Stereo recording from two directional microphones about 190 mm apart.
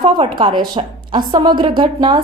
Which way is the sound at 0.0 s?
25° right (ahead or behind).